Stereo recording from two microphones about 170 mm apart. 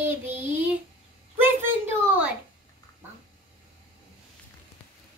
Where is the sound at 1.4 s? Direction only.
10° right (ahead or behind).